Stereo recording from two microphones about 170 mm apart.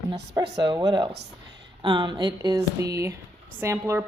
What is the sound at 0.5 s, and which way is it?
Speech, 25° right (ahead or behind).